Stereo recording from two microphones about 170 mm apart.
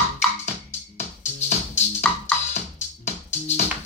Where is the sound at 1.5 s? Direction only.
45° left (ahead or behind).